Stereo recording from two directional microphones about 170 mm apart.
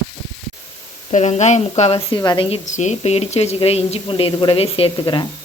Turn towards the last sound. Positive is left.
turn(degrees=25)  # may be behind; listen again after turning